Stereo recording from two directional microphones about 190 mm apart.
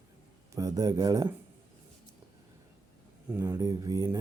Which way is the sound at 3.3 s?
15° right (ahead or behind).